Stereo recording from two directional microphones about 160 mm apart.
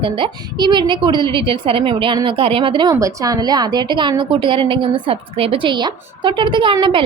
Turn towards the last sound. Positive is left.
turn(degrees=-30)  # may be behind; listen again after turning